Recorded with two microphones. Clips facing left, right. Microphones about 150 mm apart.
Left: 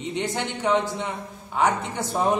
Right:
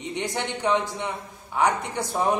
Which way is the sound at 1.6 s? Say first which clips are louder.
Even; 15° right (ahead or behind).